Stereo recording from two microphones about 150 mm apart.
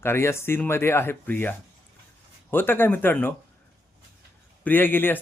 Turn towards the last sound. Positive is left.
turn(degrees=15)  # may be behind; listen again after turning